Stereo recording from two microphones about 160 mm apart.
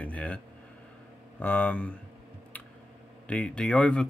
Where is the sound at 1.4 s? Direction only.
10° left (ahead or behind).